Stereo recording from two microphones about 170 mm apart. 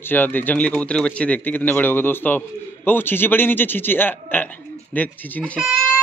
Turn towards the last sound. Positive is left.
turn(degrees=5)  # may be behind; listen again after turning